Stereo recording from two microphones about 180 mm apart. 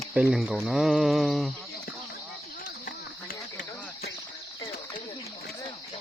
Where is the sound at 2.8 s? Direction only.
55° left (ahead or behind).